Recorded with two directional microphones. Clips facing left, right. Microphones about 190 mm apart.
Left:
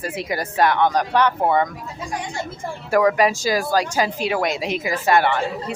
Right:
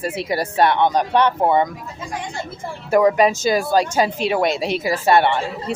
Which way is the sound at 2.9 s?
25° right (ahead or behind).